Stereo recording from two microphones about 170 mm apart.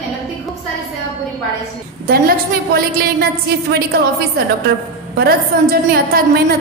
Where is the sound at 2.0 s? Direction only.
60° right (ahead or behind).